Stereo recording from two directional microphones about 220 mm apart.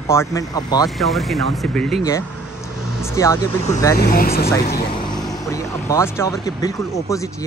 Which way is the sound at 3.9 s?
45° left (ahead or behind).